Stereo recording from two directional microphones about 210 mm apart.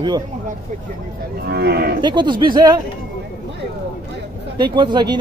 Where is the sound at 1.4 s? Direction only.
50° right (ahead or behind).